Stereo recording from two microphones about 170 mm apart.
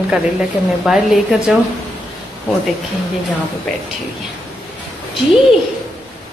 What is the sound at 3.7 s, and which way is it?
Speech, 5° left (ahead or behind).